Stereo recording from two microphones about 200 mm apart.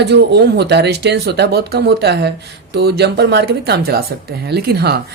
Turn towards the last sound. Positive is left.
turn(degrees=-55)  # may be behind; listen again after turning